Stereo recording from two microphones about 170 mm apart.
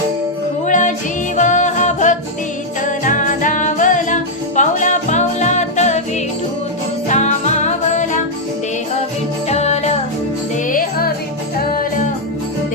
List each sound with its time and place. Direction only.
0.7 s music: 45° left (ahead or behind)
7.1 s music: 45° left (ahead or behind)
9.5 s music: 40° left (ahead or behind)
10.7 s music: 60° left (ahead or behind)